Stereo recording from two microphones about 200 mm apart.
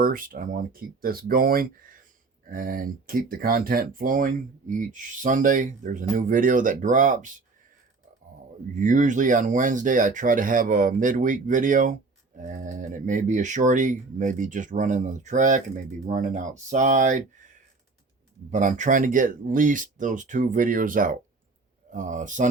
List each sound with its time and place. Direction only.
0.0 s speech: 45° right (ahead or behind)
8.7 s speech: 40° right (ahead or behind)
18.5 s speech: 40° right (ahead or behind)